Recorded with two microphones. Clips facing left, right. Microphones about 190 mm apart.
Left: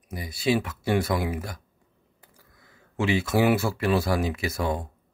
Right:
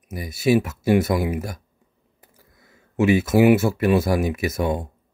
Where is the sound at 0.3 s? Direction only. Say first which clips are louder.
Right 6 dB; 25° right (ahead or behind).